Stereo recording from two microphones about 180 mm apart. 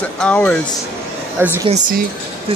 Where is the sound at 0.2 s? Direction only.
5° left (ahead or behind).